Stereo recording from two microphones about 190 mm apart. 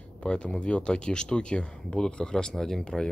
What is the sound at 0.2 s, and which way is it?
Speech, 5° left (ahead or behind).